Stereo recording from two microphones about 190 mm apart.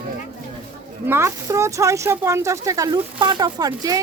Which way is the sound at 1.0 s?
15° right (ahead or behind).